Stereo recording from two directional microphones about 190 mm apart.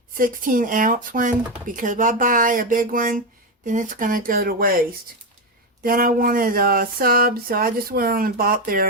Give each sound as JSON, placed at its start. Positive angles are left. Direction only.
{"t": 0.1, "sound": "speech", "side_deg": -45}
{"t": 5.8, "sound": "speech", "side_deg": -50}